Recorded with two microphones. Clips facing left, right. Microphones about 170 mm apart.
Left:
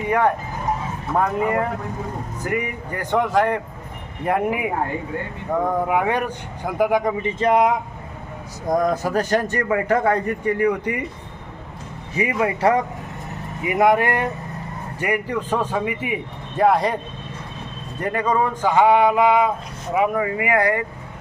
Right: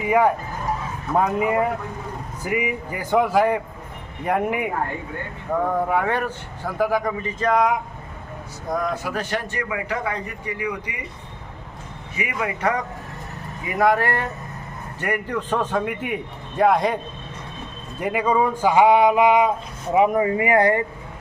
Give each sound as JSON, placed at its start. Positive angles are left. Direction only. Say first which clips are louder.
{"t": 0.0, "sound": "a man's voice", "louder": "right 1 dB", "side_deg": -10}
{"t": 8.8, "sound": "a man's voice", "louder": "left 5 dB", "side_deg": 40}
{"t": 12.1, "sound": "a man's voice", "louder": "left 6 dB", "side_deg": 30}
{"t": 13.7, "sound": "a man's voice", "louder": "left 2 dB", "side_deg": 20}
{"t": 18.0, "sound": "speech", "louder": "right 1 dB", "side_deg": -5}